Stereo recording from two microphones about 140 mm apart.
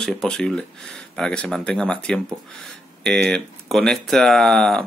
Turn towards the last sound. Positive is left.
turn(degrees=5)  # may be behind; listen again after turning